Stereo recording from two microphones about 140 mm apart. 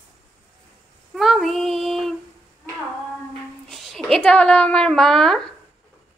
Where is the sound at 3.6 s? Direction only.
Centre (ahead or behind).